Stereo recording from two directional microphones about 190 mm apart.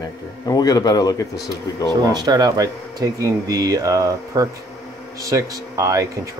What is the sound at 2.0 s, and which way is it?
Speech, 20° right (ahead or behind).